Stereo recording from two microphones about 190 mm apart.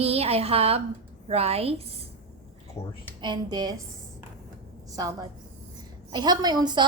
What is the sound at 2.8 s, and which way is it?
Speech, 15° left (ahead or behind).